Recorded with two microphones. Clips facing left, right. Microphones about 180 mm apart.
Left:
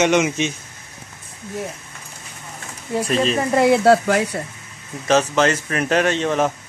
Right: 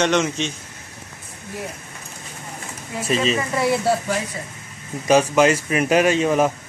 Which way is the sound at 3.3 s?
50° left (ahead or behind).